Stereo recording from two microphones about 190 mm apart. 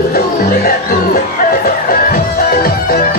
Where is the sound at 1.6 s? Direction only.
50° left (ahead or behind).